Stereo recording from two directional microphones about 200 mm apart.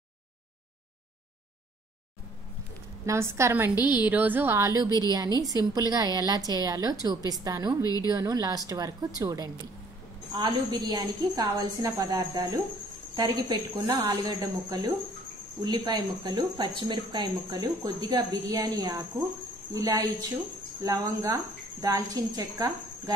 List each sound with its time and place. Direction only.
3.1 s a woman's voice: 15° right (ahead or behind)